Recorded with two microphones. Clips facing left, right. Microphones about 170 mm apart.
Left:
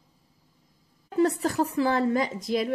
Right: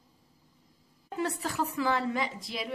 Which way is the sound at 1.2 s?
40° left (ahead or behind).